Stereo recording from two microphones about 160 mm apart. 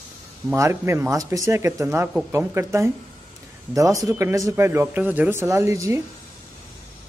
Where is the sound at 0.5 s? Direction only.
15° right (ahead or behind).